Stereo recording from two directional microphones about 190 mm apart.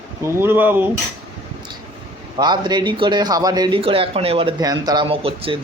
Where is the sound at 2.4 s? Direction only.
20° right (ahead or behind).